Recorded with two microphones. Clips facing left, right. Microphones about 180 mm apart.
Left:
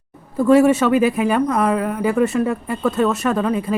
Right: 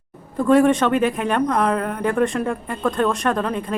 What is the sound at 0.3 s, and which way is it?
Speech, 5° left (ahead or behind).